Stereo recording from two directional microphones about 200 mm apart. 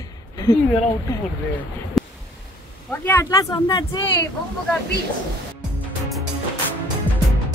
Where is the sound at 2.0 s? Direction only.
Centre (ahead or behind).